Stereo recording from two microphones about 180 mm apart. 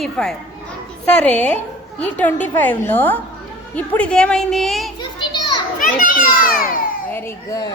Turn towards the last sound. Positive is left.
turn(degrees=15)  # may be behind; listen again after turning